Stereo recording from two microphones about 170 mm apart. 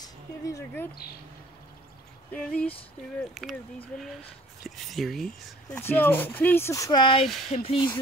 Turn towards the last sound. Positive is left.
turn(degrees=30)  # may be behind; listen again after turning